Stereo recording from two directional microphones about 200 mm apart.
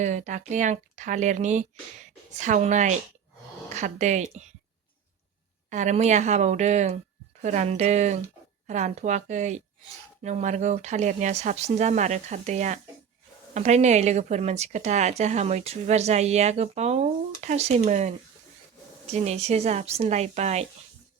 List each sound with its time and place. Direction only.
0.0 s a woman's voice: 35° right (ahead or behind)
5.7 s a woman's voice: 35° right (ahead or behind)
19.1 s a woman's voice: 35° right (ahead or behind)